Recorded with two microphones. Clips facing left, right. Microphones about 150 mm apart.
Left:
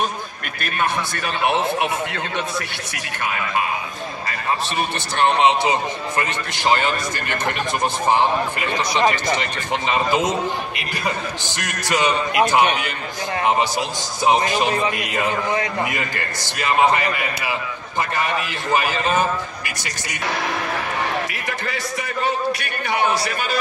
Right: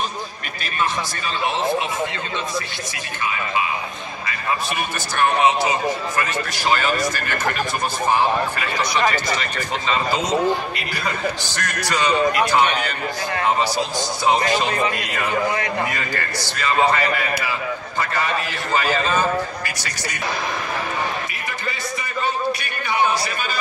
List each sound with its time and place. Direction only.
0.6 s a man's voice: 60° left (ahead or behind)
3.2 s a man's voice: 60° left (ahead or behind)
5.1 s a man's voice: 25° left (ahead or behind)
15.5 s a man's voice: 20° left (ahead or behind)
22.2 s a sound: 70° left (ahead or behind)